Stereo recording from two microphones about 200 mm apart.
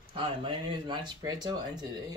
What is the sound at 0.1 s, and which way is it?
Speech, 25° right (ahead or behind).